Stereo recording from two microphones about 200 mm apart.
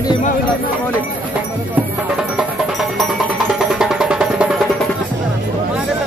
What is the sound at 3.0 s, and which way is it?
Music, centre (ahead or behind).